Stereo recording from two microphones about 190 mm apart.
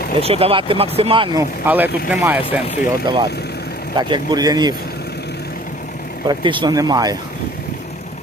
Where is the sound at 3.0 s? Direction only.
25° right (ahead or behind).